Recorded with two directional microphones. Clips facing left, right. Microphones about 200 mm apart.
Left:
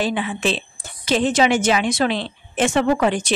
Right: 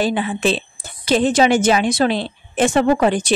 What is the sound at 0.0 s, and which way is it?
A woman's voice, 40° right (ahead or behind).